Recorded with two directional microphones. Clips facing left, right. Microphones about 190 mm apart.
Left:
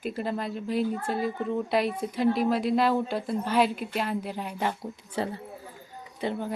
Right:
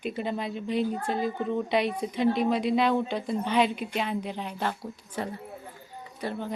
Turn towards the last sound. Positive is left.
turn(degrees=20)  # may be behind; listen again after turning